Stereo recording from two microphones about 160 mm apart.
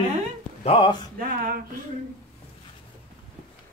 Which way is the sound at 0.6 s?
35° left (ahead or behind).